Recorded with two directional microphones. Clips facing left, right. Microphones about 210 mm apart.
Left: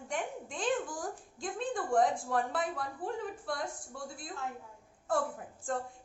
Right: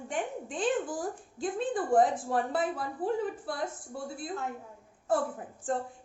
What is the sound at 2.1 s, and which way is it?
Speech, 25° right (ahead or behind).